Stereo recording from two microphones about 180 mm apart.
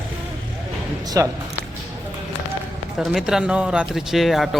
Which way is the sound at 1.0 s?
20° right (ahead or behind).